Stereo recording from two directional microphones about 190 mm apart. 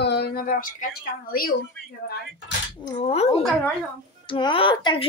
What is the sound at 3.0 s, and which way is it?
Speech, 30° left (ahead or behind).